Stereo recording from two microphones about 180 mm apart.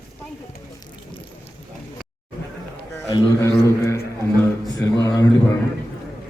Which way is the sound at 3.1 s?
15° left (ahead or behind).